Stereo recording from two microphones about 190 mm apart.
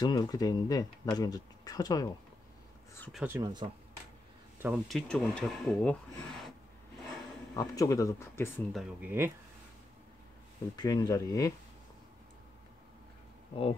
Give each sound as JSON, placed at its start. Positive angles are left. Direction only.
{"t": 0.0, "sound": "speech", "side_deg": 20}
{"t": 3.1, "sound": "speech", "side_deg": 0}
{"t": 3.3, "sound": "speech", "side_deg": -20}
{"t": 4.6, "sound": "speech", "side_deg": -5}
{"t": 7.5, "sound": "speech", "side_deg": 15}
{"t": 8.7, "sound": "speech", "side_deg": -5}
{"t": 10.8, "sound": "speech", "side_deg": 20}